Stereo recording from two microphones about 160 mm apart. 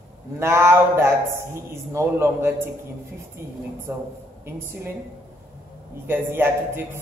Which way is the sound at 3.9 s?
20° right (ahead or behind).